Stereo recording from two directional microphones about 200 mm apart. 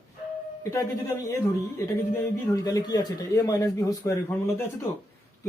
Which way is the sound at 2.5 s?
15° left (ahead or behind).